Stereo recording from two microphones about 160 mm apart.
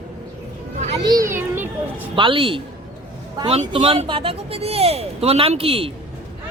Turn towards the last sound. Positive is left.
turn(degrees=-35)  # may be behind; listen again after turning